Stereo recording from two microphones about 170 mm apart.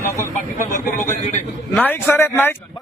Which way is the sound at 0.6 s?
50° left (ahead or behind).